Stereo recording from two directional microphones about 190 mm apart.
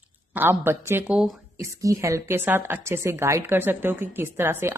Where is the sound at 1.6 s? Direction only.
15° right (ahead or behind).